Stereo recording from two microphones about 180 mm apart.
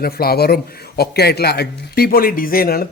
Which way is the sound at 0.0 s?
60° left (ahead or behind).